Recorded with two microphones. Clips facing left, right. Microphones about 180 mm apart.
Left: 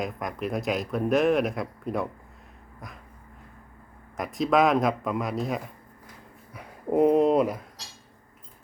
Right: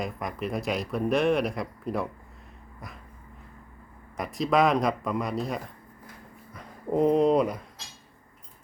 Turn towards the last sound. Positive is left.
turn(degrees=0)  # may be behind; listen again after turning